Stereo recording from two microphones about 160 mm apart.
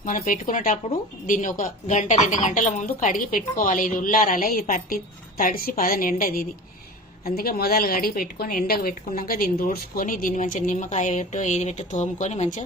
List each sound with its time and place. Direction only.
0.0 s a woman's voice: 55° left (ahead or behind)